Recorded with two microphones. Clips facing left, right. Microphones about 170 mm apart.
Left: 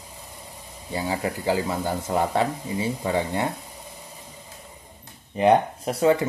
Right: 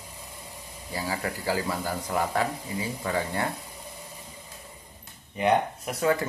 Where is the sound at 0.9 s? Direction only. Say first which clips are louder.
Left 4 dB; 20° left (ahead or behind).